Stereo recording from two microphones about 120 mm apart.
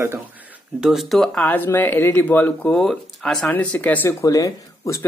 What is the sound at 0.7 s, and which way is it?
Speech, 5° right (ahead or behind).